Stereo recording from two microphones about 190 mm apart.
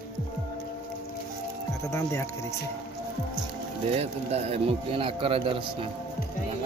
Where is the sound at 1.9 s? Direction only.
15° left (ahead or behind).